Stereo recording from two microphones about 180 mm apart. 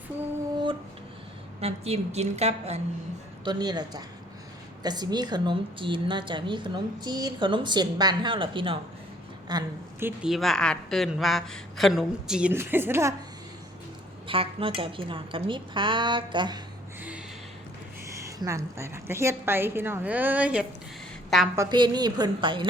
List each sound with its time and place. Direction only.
1.6 s a woman's voice: 35° right (ahead or behind)
3.4 s a woman's voice: 25° right (ahead or behind)
10.1 s a woman's voice: centre (ahead or behind)
14.3 s a woman's voice: 30° right (ahead or behind)
18.3 s a woman's voice: 15° right (ahead or behind); by 21.5 s centre (ahead or behind)
21.5 s a woman's voice: 20° right (ahead or behind)